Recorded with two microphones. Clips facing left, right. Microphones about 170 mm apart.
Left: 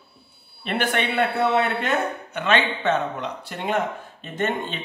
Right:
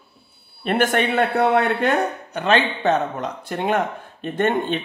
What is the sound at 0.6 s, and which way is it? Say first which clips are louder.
A man's voice: right 5 dB; 45° right (ahead or behind).